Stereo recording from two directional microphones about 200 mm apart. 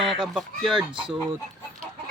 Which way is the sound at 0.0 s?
Centre (ahead or behind).